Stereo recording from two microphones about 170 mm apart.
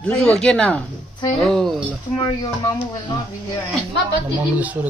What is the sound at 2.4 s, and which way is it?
Speech, 25° left (ahead or behind).